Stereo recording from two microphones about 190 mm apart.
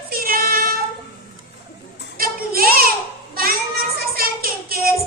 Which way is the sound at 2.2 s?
50° right (ahead or behind).